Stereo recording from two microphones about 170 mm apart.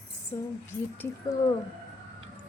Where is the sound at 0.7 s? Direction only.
10° left (ahead or behind).